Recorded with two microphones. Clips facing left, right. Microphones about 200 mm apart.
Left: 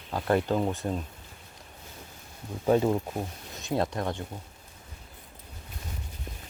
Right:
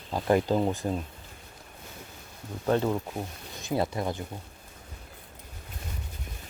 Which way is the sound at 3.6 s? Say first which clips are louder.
Even; 5° right (ahead or behind).